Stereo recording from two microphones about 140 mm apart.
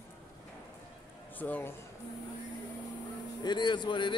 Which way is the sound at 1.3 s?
10° left (ahead or behind).